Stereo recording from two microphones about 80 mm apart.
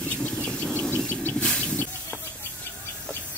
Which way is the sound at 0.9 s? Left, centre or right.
Left.